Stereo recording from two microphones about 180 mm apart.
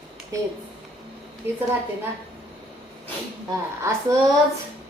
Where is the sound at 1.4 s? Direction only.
10° right (ahead or behind).